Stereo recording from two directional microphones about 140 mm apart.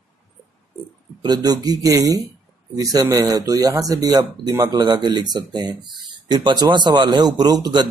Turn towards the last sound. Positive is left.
turn(degrees=-30)  # may be behind; listen again after turning